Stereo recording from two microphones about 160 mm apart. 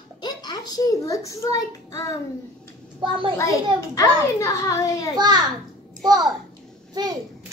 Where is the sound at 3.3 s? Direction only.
20° left (ahead or behind).